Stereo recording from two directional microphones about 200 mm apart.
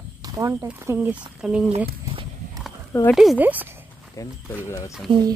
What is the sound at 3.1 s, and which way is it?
Speech, centre (ahead or behind).